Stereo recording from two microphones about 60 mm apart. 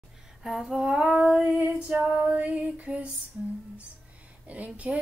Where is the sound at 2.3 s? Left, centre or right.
Right.